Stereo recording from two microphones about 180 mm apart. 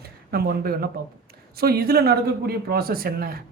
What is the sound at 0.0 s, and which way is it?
Speech, 60° right (ahead or behind).